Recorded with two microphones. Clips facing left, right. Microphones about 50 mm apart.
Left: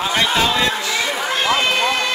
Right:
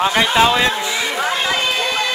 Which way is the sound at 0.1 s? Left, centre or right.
Centre.